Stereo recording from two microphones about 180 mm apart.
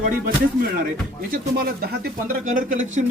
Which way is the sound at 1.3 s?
60° right (ahead or behind).